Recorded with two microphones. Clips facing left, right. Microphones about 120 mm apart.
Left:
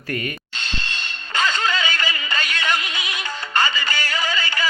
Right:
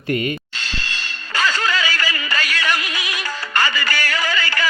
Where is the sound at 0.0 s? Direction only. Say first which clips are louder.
Right 6 dB; 25° right (ahead or behind).